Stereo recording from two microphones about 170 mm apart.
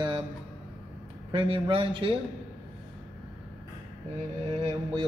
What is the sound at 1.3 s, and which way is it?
Speech, 30° right (ahead or behind).